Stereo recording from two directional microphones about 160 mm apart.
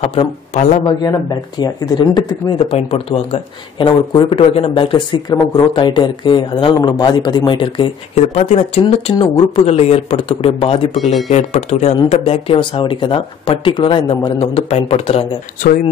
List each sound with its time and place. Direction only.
0.0 s speech: 35° left (ahead or behind)
1.6 s speech: 25° left (ahead or behind)
2.7 s speech: 35° left (ahead or behind)
8.2 s speech: 45° left (ahead or behind)